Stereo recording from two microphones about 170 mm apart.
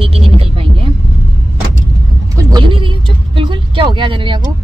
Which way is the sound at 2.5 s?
30° right (ahead or behind).